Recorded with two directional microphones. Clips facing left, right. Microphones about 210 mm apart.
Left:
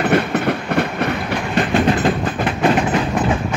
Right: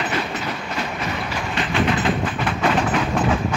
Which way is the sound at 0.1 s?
60° left (ahead or behind).